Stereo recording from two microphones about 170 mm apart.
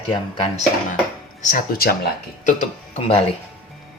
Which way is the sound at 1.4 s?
50° left (ahead or behind).